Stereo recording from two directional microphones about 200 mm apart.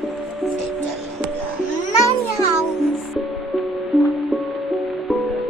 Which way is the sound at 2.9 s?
Centre (ahead or behind).